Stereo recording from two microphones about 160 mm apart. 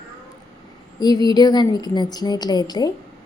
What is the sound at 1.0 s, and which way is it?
A woman's voice, 25° left (ahead or behind).